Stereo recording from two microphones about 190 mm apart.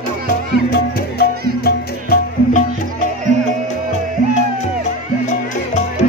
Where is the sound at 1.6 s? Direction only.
55° left (ahead or behind).